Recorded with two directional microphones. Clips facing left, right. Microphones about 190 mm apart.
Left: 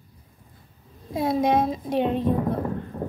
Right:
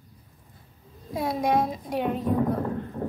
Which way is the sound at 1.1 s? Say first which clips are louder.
Left 3 dB; 25° left (ahead or behind).